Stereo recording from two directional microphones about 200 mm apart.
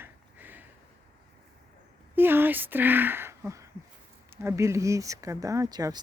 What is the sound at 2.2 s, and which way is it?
Speech, 10° right (ahead or behind).